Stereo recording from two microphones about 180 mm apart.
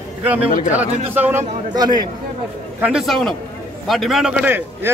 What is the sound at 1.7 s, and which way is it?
Speech, 20° right (ahead or behind).